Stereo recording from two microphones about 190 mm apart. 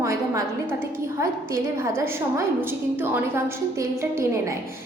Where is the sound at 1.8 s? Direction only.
15° right (ahead or behind).